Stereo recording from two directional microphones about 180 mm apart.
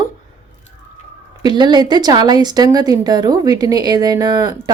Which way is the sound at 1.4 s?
25° right (ahead or behind).